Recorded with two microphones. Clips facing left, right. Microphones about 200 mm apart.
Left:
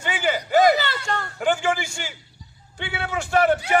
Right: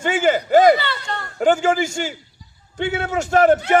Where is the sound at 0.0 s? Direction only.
45° right (ahead or behind).